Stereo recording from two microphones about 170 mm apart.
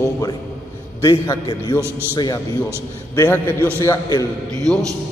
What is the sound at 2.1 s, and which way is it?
Speech, 25° left (ahead or behind).